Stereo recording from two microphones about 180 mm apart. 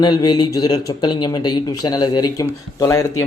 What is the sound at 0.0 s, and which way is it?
Speech, 25° left (ahead or behind).